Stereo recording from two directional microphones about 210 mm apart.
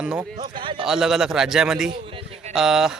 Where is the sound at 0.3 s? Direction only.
25° right (ahead or behind).